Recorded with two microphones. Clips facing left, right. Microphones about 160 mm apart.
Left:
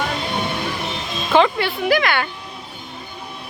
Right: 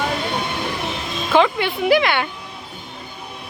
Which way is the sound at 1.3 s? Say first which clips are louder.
Even; 10° right (ahead or behind).